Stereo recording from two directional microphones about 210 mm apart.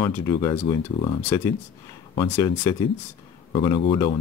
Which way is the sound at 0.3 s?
20° left (ahead or behind).